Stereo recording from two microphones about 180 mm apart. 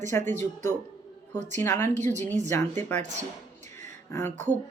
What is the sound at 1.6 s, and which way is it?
Speech, 15° left (ahead or behind).